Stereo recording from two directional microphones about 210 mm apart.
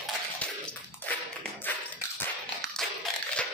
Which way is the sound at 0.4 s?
5° left (ahead or behind).